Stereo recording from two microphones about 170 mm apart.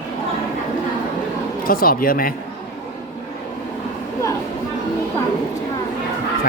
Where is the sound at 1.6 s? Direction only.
60° left (ahead or behind).